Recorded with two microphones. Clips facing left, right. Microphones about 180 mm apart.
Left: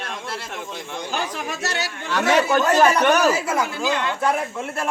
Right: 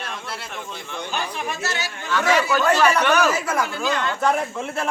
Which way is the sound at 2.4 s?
50° left (ahead or behind).